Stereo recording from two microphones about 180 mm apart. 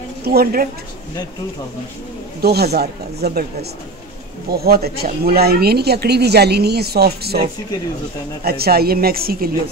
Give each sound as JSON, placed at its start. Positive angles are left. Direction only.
{"t": 0.2, "sound": "speech", "side_deg": -60}
{"t": 2.4, "sound": "speech", "side_deg": -60}
{"t": 4.5, "sound": "speech", "side_deg": -60}
{"t": 8.5, "sound": "speech", "side_deg": -60}